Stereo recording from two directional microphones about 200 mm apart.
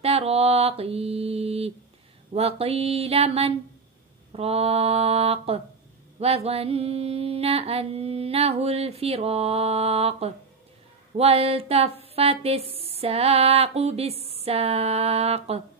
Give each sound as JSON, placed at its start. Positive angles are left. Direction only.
{"t": 0.0, "sound": "mantra", "side_deg": -30}
{"t": 2.3, "sound": "speech", "side_deg": -30}
{"t": 6.1, "sound": "mantra", "side_deg": -30}
{"t": 11.1, "sound": "speech", "side_deg": -30}